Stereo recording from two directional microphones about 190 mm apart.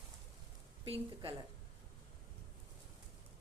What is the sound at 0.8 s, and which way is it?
Speech, 25° right (ahead or behind).